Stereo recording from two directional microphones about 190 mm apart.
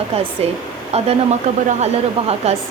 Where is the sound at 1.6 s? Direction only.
35° right (ahead or behind).